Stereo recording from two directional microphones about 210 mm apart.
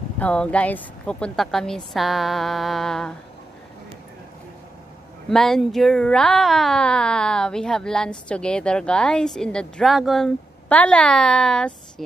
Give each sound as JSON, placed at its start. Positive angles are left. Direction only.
{"t": 0.2, "sound": "speech", "side_deg": 5}
{"t": 5.3, "sound": "speech", "side_deg": 0}